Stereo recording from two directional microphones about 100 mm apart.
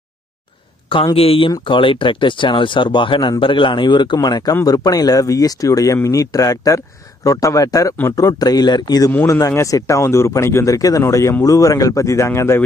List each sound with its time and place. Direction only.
1.1 s speech: 70° left (ahead or behind)
1.5 s a man's voice: 55° left (ahead or behind); by 12.6 s 25° left (ahead or behind)